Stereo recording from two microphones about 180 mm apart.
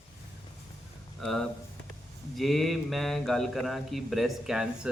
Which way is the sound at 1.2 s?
Centre (ahead or behind).